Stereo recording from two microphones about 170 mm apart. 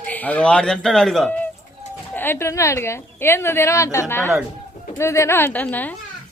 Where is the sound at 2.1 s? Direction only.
15° left (ahead or behind).